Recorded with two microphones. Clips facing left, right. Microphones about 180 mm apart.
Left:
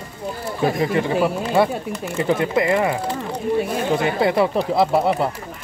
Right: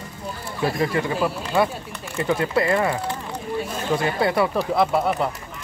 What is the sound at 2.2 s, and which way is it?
Speech, 20° left (ahead or behind).